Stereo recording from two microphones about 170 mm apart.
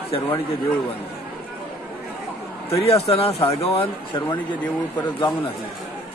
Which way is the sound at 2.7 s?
35° left (ahead or behind).